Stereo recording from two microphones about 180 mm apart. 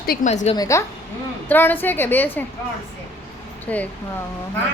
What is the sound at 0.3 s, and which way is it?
Speech, 40° left (ahead or behind).